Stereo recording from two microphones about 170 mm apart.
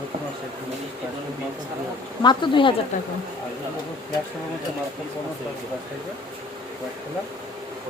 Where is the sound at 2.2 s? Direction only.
30° left (ahead or behind).